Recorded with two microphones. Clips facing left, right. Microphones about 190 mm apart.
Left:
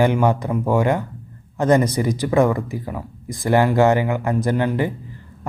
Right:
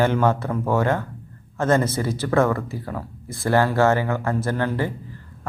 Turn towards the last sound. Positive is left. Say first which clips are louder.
# left 4 dB
turn(degrees=15)  # may be behind; listen again after turning